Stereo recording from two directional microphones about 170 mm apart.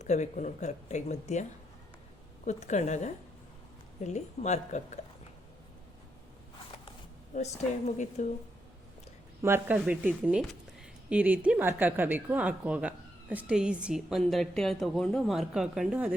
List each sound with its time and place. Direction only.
0.0 s speech: 45° left (ahead or behind)
7.3 s speech: 45° left (ahead or behind)
9.4 s a woman's voice: 10° right (ahead or behind)